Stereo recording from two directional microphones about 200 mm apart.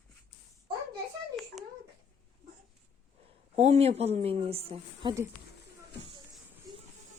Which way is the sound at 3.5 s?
30° right (ahead or behind).